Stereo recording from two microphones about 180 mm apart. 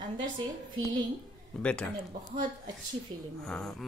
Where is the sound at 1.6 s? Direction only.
5° left (ahead or behind).